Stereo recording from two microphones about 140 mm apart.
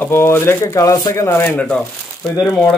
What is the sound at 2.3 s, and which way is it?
Speech, 5° right (ahead or behind).